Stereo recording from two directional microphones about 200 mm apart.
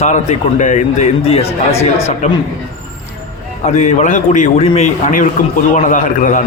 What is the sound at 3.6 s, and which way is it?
Speech, 35° left (ahead or behind).